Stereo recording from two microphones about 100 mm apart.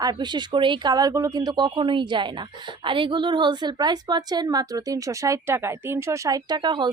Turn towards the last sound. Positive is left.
turn(degrees=-50)  # may be behind; listen again after turning